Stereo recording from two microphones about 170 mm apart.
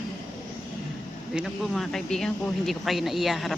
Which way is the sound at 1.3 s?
Centre (ahead or behind).